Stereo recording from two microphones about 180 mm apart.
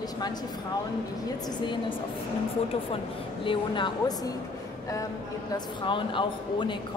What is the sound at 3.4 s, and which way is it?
Speech, 25° left (ahead or behind).